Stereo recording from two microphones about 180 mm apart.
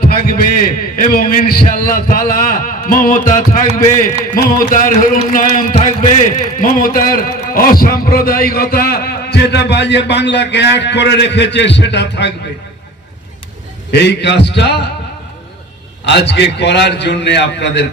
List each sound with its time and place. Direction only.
0.5 s a man's voice: 55° left (ahead or behind); by 12.3 s 70° left (ahead or behind)
13.9 s a man's voice: 70° left (ahead or behind)
16.0 s a man's voice: 70° left (ahead or behind)